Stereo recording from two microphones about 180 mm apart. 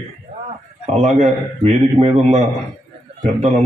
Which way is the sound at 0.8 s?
45° right (ahead or behind).